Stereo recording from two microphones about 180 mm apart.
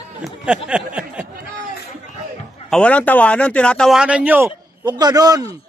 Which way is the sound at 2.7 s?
5° left (ahead or behind).